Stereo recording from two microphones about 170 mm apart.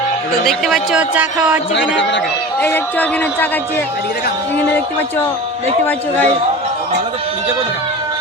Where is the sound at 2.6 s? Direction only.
10° left (ahead or behind).